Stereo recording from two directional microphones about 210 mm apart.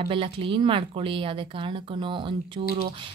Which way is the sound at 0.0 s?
25° right (ahead or behind).